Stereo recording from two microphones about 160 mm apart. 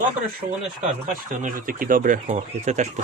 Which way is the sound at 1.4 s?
60° right (ahead or behind).